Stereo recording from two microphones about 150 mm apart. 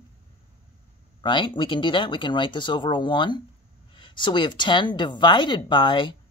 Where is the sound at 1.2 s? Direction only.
30° left (ahead or behind).